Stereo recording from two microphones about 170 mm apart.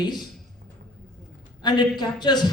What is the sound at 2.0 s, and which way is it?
Speech, 25° left (ahead or behind).